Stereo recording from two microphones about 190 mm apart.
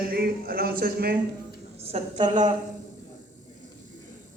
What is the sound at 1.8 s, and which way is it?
Speech, 30° right (ahead or behind).